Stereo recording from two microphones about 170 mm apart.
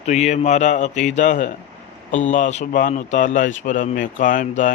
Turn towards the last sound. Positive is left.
turn(degrees=50)  # may be behind; listen again after turning